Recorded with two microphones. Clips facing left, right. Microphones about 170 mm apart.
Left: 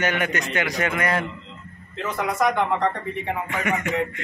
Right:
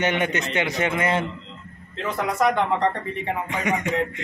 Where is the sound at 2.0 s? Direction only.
Centre (ahead or behind).